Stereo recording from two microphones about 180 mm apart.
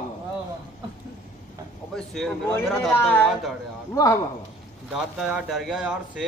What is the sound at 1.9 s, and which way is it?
A man's voice, centre (ahead or behind).